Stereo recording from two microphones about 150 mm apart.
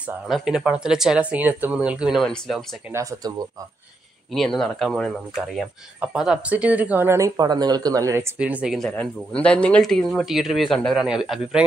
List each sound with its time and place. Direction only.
0.0 s speech: 5° right (ahead or behind)
2.9 s speech: 20° right (ahead or behind)
4.3 s speech: centre (ahead or behind); by 8.3 s 20° right (ahead or behind)
8.4 s speech: 10° right (ahead or behind)
8.7 s speech: 5° left (ahead or behind)